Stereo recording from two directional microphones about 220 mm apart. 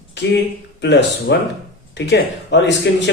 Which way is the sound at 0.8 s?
55° left (ahead or behind).